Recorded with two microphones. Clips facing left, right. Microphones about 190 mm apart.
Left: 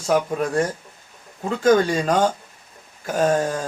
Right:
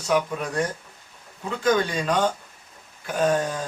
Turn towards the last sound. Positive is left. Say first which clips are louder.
# left 3 dB
turn(degrees=45)  # may be behind; listen again after turning